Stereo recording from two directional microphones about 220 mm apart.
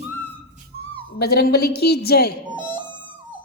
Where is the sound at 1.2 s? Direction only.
45° left (ahead or behind).